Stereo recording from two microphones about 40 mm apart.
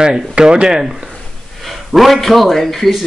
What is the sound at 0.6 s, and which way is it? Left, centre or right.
Speech, centre.